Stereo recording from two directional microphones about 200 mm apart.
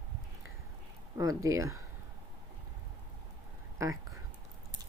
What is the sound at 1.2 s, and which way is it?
Speech, 15° right (ahead or behind).